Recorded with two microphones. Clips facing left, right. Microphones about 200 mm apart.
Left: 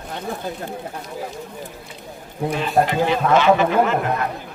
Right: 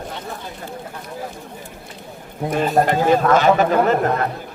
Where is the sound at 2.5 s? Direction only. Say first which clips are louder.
Right 3 dB; 45° right (ahead or behind).